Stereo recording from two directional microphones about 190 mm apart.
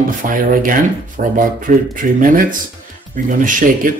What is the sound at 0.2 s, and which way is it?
Speech, 45° right (ahead or behind).